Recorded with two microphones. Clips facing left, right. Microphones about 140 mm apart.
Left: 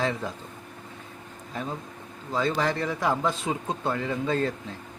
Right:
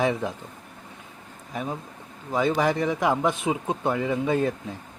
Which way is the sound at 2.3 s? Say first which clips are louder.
Right 3 dB; 15° right (ahead or behind).